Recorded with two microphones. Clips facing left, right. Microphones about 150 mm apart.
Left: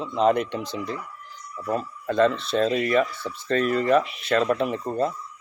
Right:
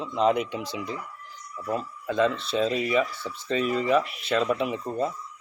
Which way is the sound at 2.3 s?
60° left (ahead or behind).